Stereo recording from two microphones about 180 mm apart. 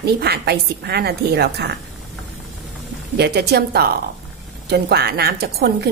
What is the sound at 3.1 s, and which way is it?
A woman's voice, 65° right (ahead or behind).